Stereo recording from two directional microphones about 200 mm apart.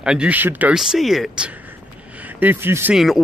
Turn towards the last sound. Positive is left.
turn(degrees=0)  # may be behind; listen again after turning